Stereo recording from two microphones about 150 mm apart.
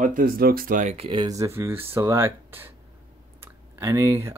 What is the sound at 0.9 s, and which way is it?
Speech, 35° right (ahead or behind).